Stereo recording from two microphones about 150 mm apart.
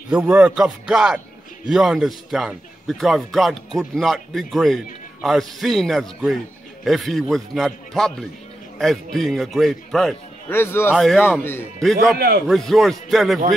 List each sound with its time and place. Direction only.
0.1 s a man's voice: 10° right (ahead or behind)
10.5 s a man's voice: 15° left (ahead or behind)
11.0 s a man's voice: centre (ahead or behind)
12.2 s a man's voice: 90° right
12.4 s a man's voice: centre (ahead or behind)